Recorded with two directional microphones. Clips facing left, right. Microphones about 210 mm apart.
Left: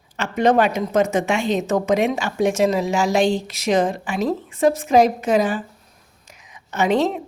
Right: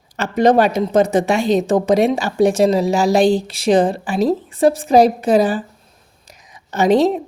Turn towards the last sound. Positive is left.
turn(degrees=-35)  # may be behind; listen again after turning